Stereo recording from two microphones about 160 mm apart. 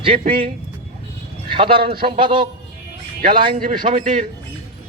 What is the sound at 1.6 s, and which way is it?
Speech, 70° right (ahead or behind).